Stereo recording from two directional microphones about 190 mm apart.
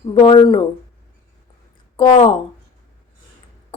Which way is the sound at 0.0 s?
25° left (ahead or behind).